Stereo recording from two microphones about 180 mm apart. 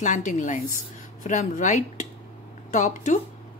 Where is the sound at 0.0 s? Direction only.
45° left (ahead or behind).